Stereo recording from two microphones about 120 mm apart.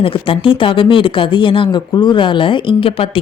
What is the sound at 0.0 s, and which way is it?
Speech, 45° left (ahead or behind).